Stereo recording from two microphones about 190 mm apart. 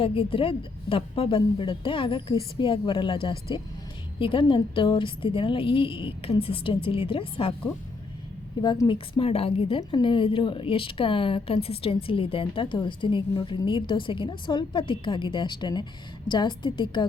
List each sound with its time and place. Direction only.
0.0 s a woman's voice: 30° left (ahead or behind)